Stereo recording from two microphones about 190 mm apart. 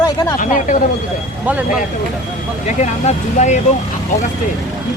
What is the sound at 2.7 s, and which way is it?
Speech, 35° left (ahead or behind).